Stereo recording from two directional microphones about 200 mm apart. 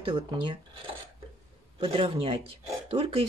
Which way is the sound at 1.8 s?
25° right (ahead or behind).